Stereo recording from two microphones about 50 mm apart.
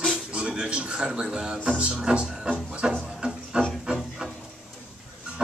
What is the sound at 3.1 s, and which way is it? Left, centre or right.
Music, centre.